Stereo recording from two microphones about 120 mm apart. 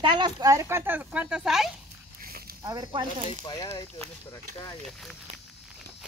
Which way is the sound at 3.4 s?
35° left (ahead or behind).